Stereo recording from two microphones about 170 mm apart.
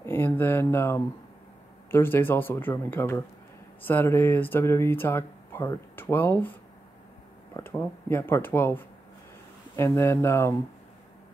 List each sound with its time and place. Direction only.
0.0 s speech: 15° left (ahead or behind)
7.5 s speech: 15° left (ahead or behind)